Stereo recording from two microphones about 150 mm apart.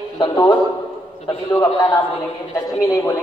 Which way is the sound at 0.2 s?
30° left (ahead or behind).